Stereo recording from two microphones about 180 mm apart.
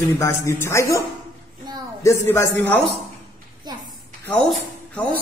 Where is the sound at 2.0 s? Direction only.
15° left (ahead or behind).